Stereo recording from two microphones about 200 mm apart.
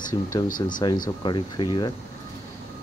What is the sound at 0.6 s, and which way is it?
Speech, 25° left (ahead or behind).